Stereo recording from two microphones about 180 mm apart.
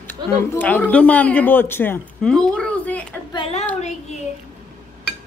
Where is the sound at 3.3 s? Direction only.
35° left (ahead or behind).